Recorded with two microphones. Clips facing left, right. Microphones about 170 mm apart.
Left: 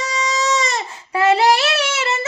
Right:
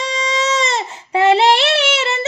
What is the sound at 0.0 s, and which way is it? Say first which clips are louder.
Child singing: right 2 dB; 25° right (ahead or behind).